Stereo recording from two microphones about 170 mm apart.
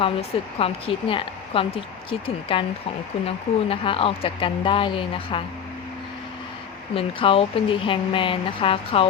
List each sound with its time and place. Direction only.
0.0 s speech: 35° left (ahead or behind)
6.9 s speech: 35° left (ahead or behind)